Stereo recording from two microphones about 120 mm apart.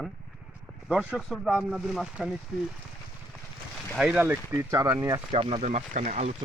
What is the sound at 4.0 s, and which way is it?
Speech, 5° right (ahead or behind).